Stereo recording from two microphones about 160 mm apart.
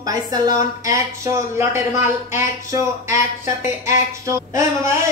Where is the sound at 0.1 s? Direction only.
25° right (ahead or behind).